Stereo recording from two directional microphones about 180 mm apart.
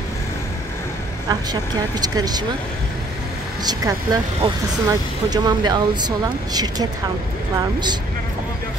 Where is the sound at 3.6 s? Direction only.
20° right (ahead or behind).